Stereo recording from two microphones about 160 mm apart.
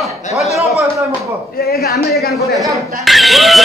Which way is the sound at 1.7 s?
75° left (ahead or behind).